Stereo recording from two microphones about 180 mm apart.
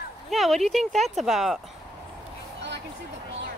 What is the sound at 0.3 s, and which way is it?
Speech, centre (ahead or behind).